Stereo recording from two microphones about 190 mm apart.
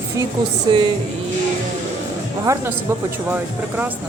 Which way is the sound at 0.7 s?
25° right (ahead or behind).